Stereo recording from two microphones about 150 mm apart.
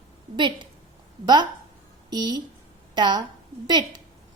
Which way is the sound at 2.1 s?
30° right (ahead or behind).